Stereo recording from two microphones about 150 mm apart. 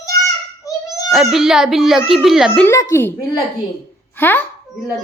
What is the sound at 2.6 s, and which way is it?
A child's voice, 20° left (ahead or behind).